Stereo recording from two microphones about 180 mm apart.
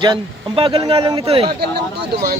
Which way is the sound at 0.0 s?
25° right (ahead or behind).